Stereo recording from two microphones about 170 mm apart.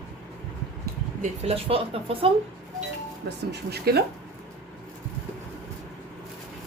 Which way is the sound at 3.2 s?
70° right (ahead or behind).